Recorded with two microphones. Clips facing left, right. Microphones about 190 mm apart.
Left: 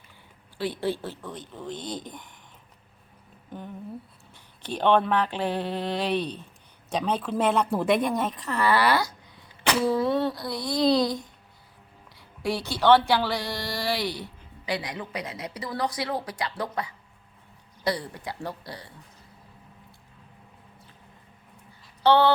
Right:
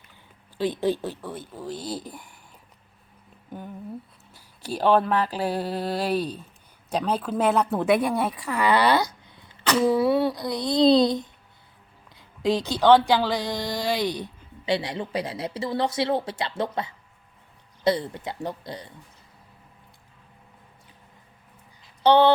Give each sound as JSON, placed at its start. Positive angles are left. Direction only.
{"t": 0.8, "sound": "a woman's voice", "side_deg": -15}
{"t": 4.3, "sound": "a woman's voice", "side_deg": -10}
{"t": 22.0, "sound": "speech", "side_deg": -20}